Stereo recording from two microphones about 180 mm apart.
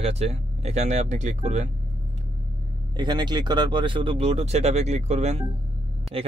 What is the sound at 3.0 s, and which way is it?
Speech, 25° right (ahead or behind).